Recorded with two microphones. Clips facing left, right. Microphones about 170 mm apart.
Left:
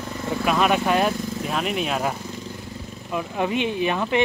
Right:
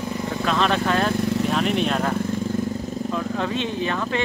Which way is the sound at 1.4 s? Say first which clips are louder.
Right 3 dB; 5° left (ahead or behind).